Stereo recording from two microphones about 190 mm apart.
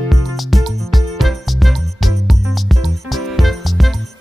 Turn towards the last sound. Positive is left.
turn(degrees=0)  # may be behind; listen again after turning